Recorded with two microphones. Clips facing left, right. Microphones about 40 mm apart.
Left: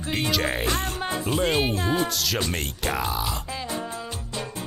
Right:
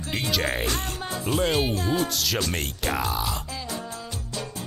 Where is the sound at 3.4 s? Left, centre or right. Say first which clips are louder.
Left 3 dB; left.